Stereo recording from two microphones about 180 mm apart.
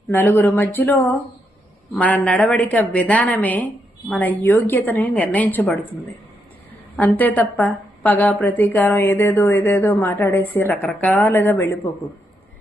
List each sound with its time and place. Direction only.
0.1 s a woman's voice: 10° left (ahead or behind)
6.9 s a woman's voice: 10° left (ahead or behind)